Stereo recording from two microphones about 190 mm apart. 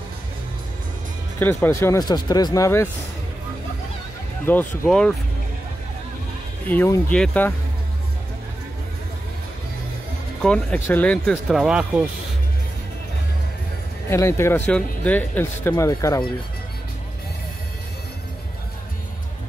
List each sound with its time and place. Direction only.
1.4 s speech: 10° left (ahead or behind)
4.5 s speech: 5° left (ahead or behind)
6.7 s speech: 10° left (ahead or behind)
10.4 s speech: 5° left (ahead or behind)
14.0 s speech: 15° left (ahead or behind)